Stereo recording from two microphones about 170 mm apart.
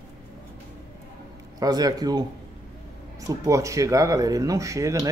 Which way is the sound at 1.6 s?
20° right (ahead or behind).